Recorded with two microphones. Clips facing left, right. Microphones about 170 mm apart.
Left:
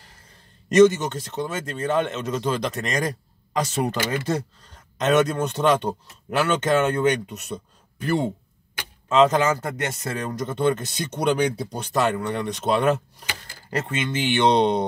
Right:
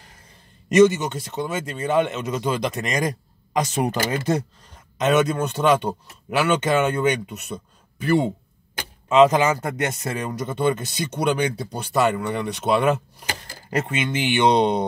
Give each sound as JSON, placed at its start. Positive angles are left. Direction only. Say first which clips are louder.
{"t": 0.7, "sound": "speech", "louder": "even", "side_deg": -10}
{"t": 4.9, "sound": "speech", "louder": "even", "side_deg": -10}
{"t": 13.3, "sound": "a sound", "louder": "right 4 dB", "side_deg": -45}
{"t": 13.7, "sound": "speech", "louder": "right 2 dB", "side_deg": -15}